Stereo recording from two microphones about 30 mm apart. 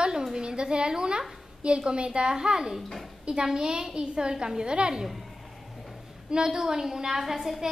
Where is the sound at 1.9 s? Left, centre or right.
Right.